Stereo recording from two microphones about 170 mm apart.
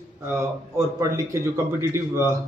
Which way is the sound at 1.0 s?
15° right (ahead or behind).